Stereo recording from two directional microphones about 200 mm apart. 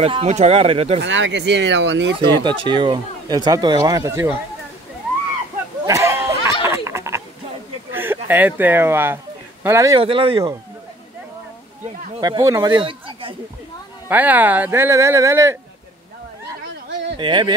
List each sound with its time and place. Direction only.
0.0 s speech: 30° right (ahead or behind)
1.0 s speech: 65° right (ahead or behind)
2.1 s speech: 25° right (ahead or behind)
5.9 s a sound: 15° right (ahead or behind)
6.5 s a sound: 25° left (ahead or behind)
6.8 s a sound: 15° right (ahead or behind)
8.3 s speech: 10° right (ahead or behind)
9.9 s speech: 25° right (ahead or behind)
12.2 s speech: 20° right (ahead or behind)
14.0 s speech: 10° right (ahead or behind)
16.6 s a sound: 60° right (ahead or behind)
17.2 s speech: 25° right (ahead or behind)